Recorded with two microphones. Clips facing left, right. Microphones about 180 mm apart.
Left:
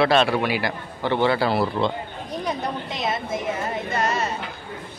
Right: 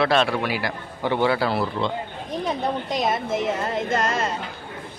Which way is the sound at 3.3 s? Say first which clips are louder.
Right 2 dB; 90° right.